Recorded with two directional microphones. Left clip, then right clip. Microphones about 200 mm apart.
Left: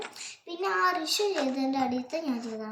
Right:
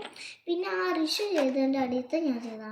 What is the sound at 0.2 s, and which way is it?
Child singing, 55° left (ahead or behind).